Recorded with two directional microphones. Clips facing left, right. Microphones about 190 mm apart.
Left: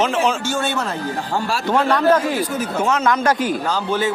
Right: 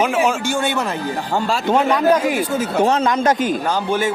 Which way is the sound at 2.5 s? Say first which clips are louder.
Right 3 dB; 25° right (ahead or behind).